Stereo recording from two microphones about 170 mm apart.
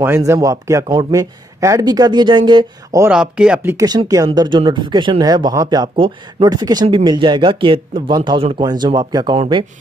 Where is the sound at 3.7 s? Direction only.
25° right (ahead or behind).